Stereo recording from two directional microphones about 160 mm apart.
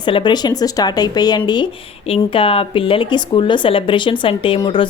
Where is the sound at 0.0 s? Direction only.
30° left (ahead or behind).